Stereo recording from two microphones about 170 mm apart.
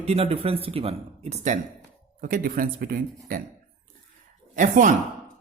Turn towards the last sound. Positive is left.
turn(degrees=-50)  # may be behind; listen again after turning